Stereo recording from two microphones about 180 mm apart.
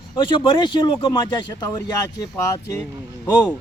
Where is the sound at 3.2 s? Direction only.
20° left (ahead or behind).